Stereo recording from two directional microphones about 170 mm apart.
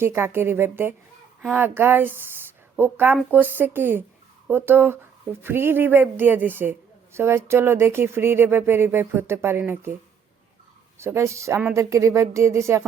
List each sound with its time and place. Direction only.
0.0 s a woman's voice: 15° right (ahead or behind)
10.9 s a woman's voice: 15° right (ahead or behind)